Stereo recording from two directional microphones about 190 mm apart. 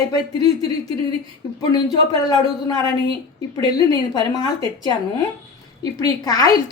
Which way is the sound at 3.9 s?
20° left (ahead or behind).